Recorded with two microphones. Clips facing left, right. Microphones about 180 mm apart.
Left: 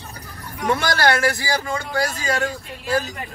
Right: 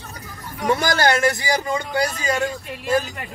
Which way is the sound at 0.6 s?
20° right (ahead or behind).